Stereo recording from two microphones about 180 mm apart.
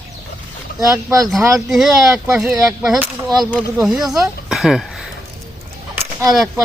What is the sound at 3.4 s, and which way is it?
Speech, 5° left (ahead or behind).